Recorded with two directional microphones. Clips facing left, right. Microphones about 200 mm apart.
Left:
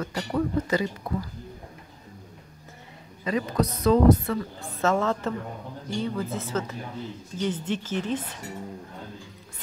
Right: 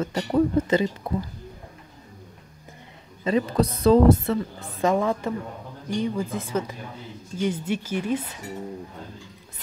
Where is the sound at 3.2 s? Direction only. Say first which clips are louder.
Right 4 dB; 30° right (ahead or behind).